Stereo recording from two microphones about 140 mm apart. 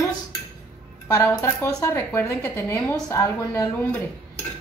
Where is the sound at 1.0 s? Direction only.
20° left (ahead or behind).